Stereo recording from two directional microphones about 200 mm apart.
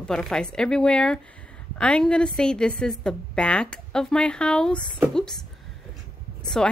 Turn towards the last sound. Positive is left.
turn(degrees=5)  # may be behind; listen again after turning